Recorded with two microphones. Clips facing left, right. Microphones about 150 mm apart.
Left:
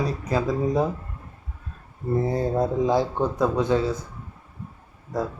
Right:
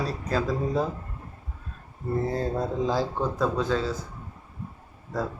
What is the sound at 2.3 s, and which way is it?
A man's voice, 15° left (ahead or behind).